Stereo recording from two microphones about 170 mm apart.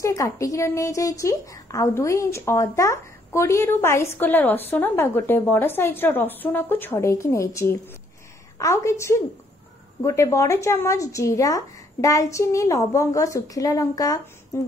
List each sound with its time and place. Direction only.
0.0 s a woman's voice: 20° left (ahead or behind)